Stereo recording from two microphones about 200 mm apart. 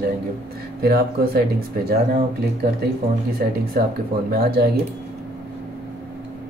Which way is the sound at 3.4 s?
45° right (ahead or behind).